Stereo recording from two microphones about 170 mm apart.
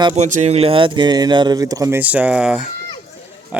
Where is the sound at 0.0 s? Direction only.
40° right (ahead or behind); by 2.0 s 20° right (ahead or behind).